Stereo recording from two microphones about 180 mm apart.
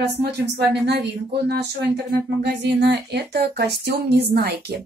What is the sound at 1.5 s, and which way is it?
Speech, 70° right (ahead or behind).